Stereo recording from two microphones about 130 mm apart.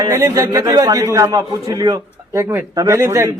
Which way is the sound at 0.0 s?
25° right (ahead or behind).